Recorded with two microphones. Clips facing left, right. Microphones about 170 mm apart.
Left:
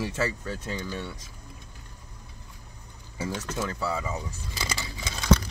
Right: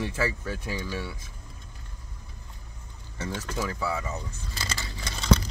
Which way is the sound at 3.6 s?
Centre (ahead or behind).